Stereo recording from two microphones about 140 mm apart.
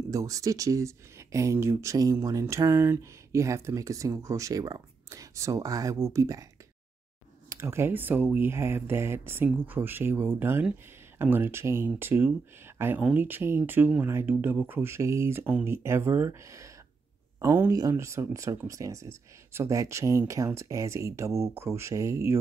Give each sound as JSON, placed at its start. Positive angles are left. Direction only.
{"t": 0.1, "sound": "speech", "side_deg": -25}
{"t": 7.4, "sound": "speech", "side_deg": -20}